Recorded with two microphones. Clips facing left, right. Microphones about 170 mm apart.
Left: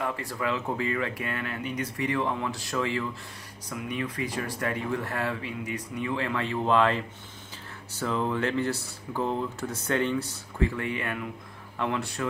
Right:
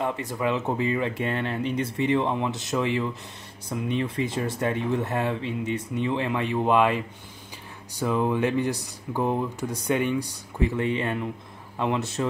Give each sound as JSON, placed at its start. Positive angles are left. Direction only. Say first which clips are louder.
{"t": 0.0, "sound": "speech", "louder": "right 4 dB", "side_deg": -20}